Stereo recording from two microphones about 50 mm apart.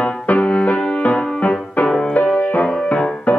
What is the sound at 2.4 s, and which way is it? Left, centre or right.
Music, left.